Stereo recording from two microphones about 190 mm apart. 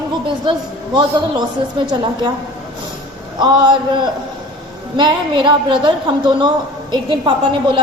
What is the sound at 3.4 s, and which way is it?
A woman's voice, 25° right (ahead or behind).